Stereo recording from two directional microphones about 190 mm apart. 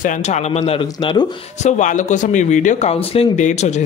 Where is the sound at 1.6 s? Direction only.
40° left (ahead or behind).